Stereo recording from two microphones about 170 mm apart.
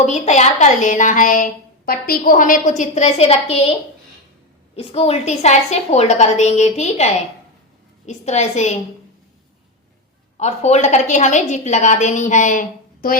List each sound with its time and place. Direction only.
0.0 s a woman's voice: 45° left (ahead or behind)
4.8 s a woman's voice: 35° left (ahead or behind)
10.3 s a woman's voice: 40° left (ahead or behind)